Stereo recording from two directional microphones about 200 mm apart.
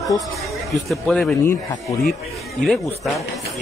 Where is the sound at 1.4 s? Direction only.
15° left (ahead or behind).